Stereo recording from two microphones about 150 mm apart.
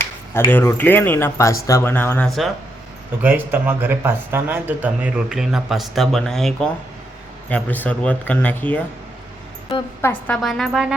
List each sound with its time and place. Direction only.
0.3 s speech: 15° left (ahead or behind)
3.2 s speech: 10° right (ahead or behind); by 8.8 s 10° left (ahead or behind)
10.0 s speech: 10° left (ahead or behind)